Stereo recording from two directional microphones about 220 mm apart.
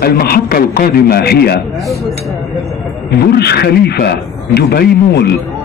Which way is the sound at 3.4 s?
45° left (ahead or behind).